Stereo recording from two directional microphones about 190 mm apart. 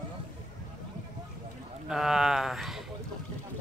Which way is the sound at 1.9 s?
Centre (ahead or behind).